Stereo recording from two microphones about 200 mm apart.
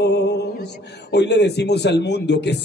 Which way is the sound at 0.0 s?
55° left (ahead or behind).